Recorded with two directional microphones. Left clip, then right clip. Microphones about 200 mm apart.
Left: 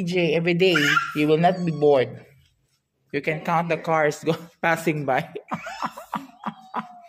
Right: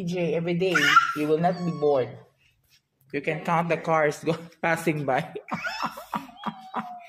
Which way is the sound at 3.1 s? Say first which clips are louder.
Left 2 dB; 15° left (ahead or behind).